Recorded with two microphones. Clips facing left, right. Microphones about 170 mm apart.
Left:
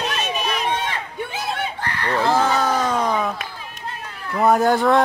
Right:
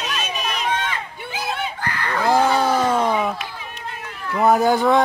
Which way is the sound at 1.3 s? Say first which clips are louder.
Right 3 dB; 25° left (ahead or behind).